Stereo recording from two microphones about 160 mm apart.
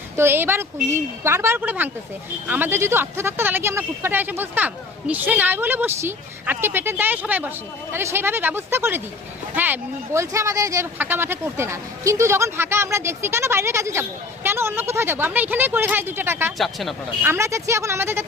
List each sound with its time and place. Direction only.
0.2 s speech: 15° right (ahead or behind)
16.6 s speech: centre (ahead or behind)
17.2 s speech: 15° right (ahead or behind)